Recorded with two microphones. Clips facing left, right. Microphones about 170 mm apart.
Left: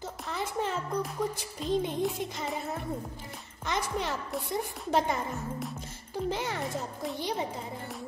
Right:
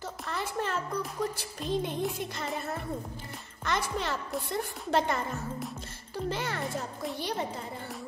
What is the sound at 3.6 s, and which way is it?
A woman's voice, 15° left (ahead or behind).